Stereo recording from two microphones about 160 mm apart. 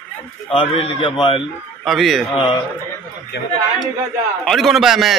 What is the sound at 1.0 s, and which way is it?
Speech, 30° left (ahead or behind).